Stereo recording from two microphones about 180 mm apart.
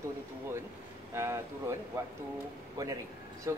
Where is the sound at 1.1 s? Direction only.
15° right (ahead or behind).